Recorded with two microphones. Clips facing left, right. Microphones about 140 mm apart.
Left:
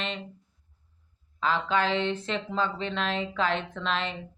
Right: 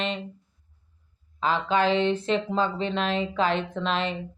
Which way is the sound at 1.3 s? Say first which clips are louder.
Right 3 dB; 10° right (ahead or behind).